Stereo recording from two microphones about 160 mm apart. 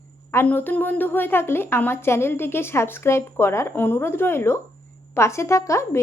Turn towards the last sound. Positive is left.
turn(degrees=20)  # may be behind; listen again after turning